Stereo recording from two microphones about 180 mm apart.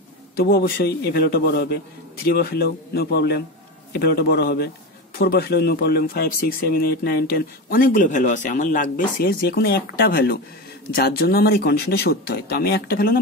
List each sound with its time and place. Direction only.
0.4 s speech: 65° left (ahead or behind)